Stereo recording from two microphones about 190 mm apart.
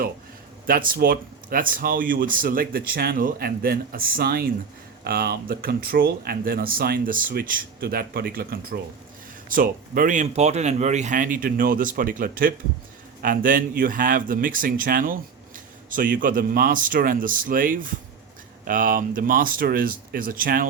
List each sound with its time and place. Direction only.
0.7 s speech: 45° right (ahead or behind)